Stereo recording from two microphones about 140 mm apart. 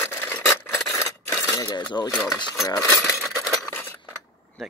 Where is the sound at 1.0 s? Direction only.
20° left (ahead or behind).